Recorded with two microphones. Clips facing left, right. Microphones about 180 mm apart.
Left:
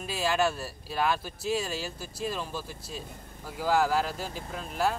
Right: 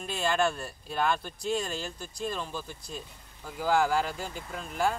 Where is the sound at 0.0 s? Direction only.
5° left (ahead or behind).